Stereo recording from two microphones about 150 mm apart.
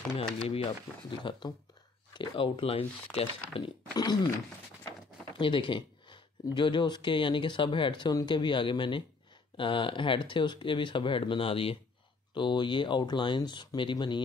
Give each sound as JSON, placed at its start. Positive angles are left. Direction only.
{"t": 0.5, "sound": "speech", "side_deg": 40}
{"t": 3.9, "sound": "speech", "side_deg": 25}
{"t": 5.4, "sound": "speech", "side_deg": 35}